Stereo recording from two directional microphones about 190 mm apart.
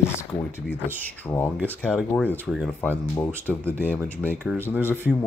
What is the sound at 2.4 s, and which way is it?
Speech, centre (ahead or behind).